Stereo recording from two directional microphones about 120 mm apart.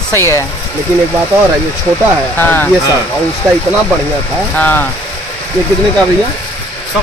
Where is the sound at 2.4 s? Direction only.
15° left (ahead or behind).